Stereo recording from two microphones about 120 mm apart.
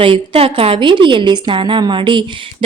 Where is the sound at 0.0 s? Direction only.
50° right (ahead or behind).